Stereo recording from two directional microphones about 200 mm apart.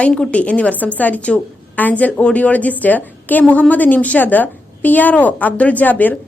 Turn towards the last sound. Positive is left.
turn(degrees=10)  # may be behind; listen again after turning